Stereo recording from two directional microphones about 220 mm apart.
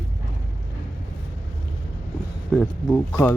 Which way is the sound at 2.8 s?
10° left (ahead or behind).